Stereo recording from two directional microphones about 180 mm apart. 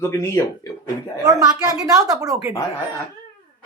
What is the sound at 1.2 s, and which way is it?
A woman's voice, 20° right (ahead or behind).